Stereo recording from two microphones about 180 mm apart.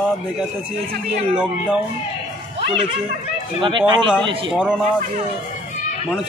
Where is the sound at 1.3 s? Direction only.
5° right (ahead or behind).